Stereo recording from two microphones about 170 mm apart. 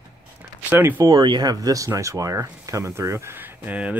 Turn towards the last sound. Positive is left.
turn(degrees=-10)  # may be behind; listen again after turning